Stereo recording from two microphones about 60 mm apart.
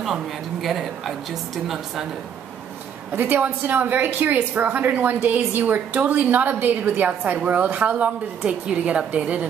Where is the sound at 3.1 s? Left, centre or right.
Right.